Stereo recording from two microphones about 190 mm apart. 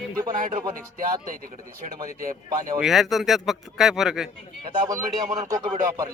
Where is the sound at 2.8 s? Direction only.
Centre (ahead or behind).